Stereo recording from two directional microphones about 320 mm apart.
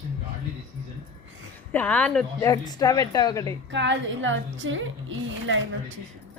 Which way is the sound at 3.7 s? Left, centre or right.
Right.